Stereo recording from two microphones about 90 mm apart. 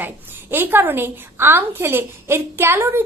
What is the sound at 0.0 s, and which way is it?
A woman's voice, 25° right (ahead or behind).